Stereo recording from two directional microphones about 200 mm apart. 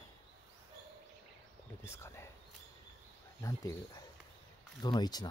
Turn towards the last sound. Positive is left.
turn(degrees=20)  # may be behind; listen again after turning